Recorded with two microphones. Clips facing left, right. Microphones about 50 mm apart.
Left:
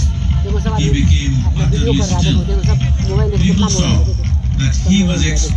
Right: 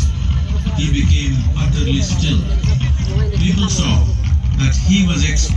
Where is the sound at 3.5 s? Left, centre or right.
Centre.